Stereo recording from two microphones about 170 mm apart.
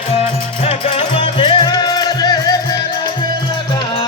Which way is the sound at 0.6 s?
35° left (ahead or behind).